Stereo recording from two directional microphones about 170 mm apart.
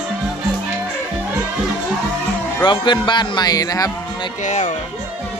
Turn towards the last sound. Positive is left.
turn(degrees=45)  # may be behind; listen again after turning